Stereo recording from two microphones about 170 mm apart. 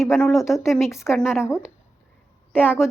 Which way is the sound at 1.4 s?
15° left (ahead or behind).